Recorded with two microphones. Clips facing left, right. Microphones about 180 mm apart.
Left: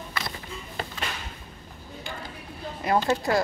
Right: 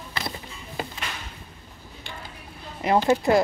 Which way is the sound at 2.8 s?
20° right (ahead or behind).